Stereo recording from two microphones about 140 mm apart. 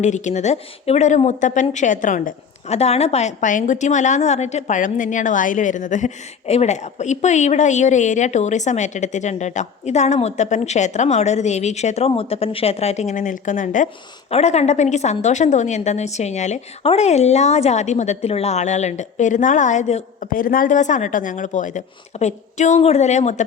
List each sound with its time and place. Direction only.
0.0 s a woman's voice: 60° left (ahead or behind)
6.5 s a woman's voice: 50° left (ahead or behind)
14.3 s a woman's voice: 50° left (ahead or behind)
20.3 s a woman's voice: 85° left; by 23.5 s 55° left (ahead or behind)